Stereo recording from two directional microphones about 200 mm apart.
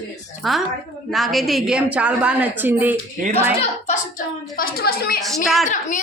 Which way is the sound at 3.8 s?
40° left (ahead or behind).